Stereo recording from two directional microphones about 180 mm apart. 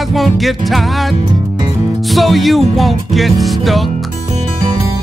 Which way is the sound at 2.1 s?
Centre (ahead or behind).